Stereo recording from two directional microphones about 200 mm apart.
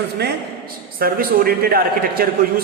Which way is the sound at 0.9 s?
50° right (ahead or behind).